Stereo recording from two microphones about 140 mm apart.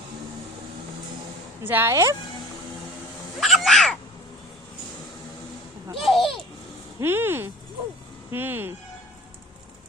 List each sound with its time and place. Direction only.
1.6 s speech: 15° right (ahead or behind)
3.4 s cat: centre (ahead or behind)
6.0 s cat: centre (ahead or behind)
7.0 s speech: 15° right (ahead or behind)